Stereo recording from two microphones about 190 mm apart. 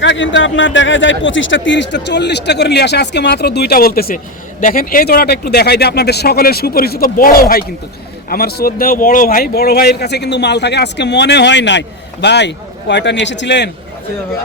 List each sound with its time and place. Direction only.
0.0 s a man's voice: 75° left (ahead or behind)